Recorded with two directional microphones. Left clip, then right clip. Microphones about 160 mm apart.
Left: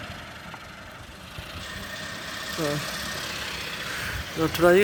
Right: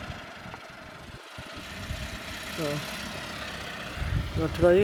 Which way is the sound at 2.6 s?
Centre (ahead or behind).